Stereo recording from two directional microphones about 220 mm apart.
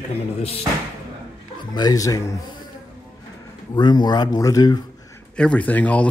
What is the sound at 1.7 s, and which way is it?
Speech, 15° left (ahead or behind).